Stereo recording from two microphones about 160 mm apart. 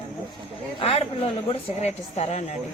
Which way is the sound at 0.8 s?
40° left (ahead or behind).